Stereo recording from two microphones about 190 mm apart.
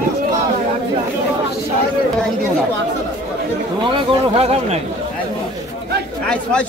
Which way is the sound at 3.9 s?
30° right (ahead or behind).